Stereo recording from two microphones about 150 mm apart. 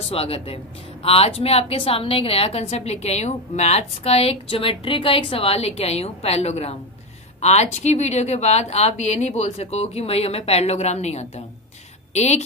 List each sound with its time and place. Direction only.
0.0 s a woman's voice: 40° left (ahead or behind)